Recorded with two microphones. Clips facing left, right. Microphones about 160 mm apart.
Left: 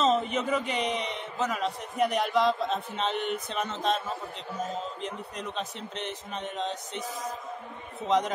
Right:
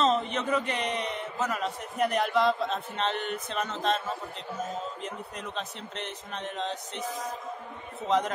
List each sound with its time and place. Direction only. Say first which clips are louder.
0.0 s a man's voice: left 1 dB; 5° left (ahead or behind)
5.0 s a man's voice: left 2 dB; centre (ahead or behind)